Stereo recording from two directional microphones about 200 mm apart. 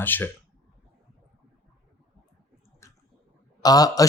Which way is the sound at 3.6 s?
20° left (ahead or behind).